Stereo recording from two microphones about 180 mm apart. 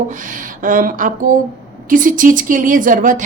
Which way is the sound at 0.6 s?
50° right (ahead or behind).